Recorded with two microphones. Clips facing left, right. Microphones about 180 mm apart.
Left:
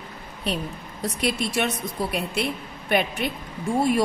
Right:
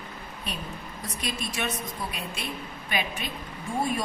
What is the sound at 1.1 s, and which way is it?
A woman's voice, 70° left (ahead or behind).